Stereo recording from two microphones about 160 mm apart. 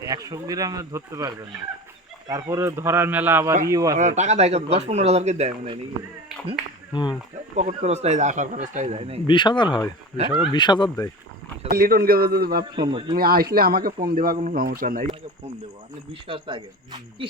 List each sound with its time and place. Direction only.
0.0 s speech: 20° right (ahead or behind)
3.9 s speech: 50° right (ahead or behind)
6.9 s speech: 30° left (ahead or behind)
7.5 s speech: 45° right (ahead or behind)
9.2 s speech: 30° left (ahead or behind)
11.7 s a man's voice: 65° right (ahead or behind)
12.7 s speech: 30° right (ahead or behind)
13.1 s speech: 70° right (ahead or behind)
16.2 s speech: 30° right (ahead or behind)